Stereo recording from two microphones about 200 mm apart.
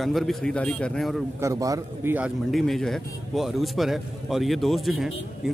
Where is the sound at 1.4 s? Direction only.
15° right (ahead or behind).